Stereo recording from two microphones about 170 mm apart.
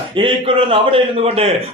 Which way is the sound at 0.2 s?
30° right (ahead or behind).